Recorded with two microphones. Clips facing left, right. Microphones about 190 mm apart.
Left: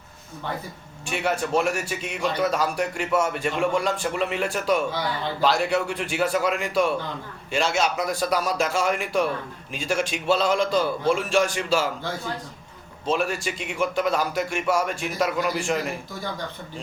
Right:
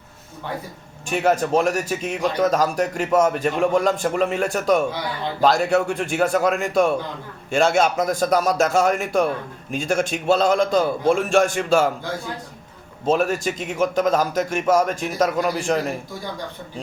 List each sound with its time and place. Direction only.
1.0 s a man's voice: 40° right (ahead or behind)
13.1 s speech: 45° right (ahead or behind)